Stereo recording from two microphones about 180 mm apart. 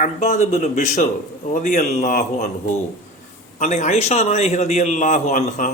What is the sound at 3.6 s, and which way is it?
A man's voice, 40° left (ahead or behind).